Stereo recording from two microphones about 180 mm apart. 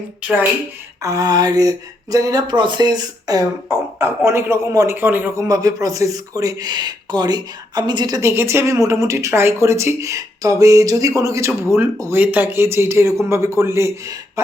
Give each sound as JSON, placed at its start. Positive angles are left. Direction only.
{"t": 0.2, "sound": "speech", "side_deg": -10}
{"t": 1.0, "sound": "speech", "side_deg": -20}